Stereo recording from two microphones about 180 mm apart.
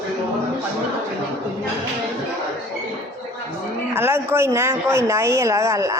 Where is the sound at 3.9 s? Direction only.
15° right (ahead or behind).